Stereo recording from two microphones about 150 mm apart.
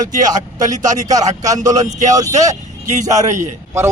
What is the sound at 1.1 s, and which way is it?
Speech, 25° right (ahead or behind).